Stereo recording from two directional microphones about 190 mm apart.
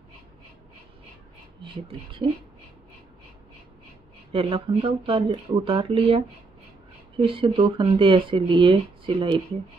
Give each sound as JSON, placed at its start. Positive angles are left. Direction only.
{"t": 1.6, "sound": "speech", "side_deg": -30}
{"t": 4.3, "sound": "speech", "side_deg": -30}